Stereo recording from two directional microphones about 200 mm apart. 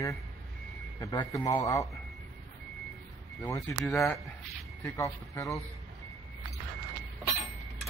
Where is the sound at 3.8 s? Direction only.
Centre (ahead or behind).